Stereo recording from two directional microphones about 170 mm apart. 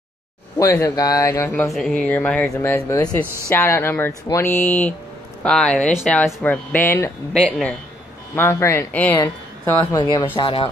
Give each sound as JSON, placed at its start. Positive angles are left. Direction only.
{"t": 0.6, "sound": "speech", "side_deg": 20}
{"t": 1.6, "sound": "speech", "side_deg": 0}